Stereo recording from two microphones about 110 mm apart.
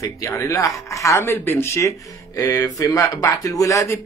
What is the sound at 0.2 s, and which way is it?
Speech, 25° left (ahead or behind).